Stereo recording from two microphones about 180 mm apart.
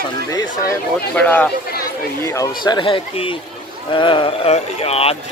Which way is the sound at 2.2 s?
20° left (ahead or behind).